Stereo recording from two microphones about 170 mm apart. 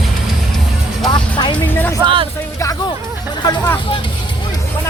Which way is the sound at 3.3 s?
25° left (ahead or behind).